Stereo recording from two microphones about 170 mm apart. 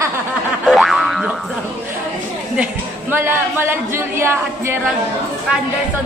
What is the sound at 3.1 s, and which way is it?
Speech, 15° right (ahead or behind).